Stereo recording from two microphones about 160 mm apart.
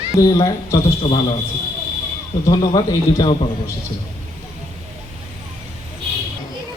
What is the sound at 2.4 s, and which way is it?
Speech, 25° left (ahead or behind).